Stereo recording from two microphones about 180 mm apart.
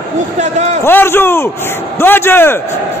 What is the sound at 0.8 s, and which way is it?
A man's voice, 15° left (ahead or behind).